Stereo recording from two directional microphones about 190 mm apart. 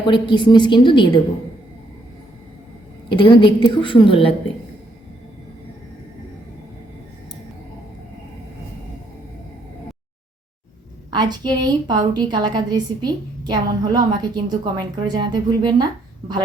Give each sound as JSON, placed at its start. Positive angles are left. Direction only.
{"t": 0.1, "sound": "a woman's voice", "side_deg": 25}
{"t": 3.1, "sound": "a woman's voice", "side_deg": 25}
{"t": 11.1, "sound": "a woman's voice", "side_deg": -20}